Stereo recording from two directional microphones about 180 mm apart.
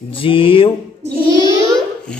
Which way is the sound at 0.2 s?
30° left (ahead or behind).